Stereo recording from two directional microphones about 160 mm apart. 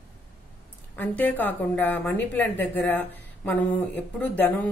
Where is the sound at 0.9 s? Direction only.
10° left (ahead or behind).